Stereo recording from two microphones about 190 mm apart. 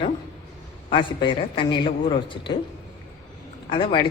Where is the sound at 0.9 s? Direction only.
25° left (ahead or behind).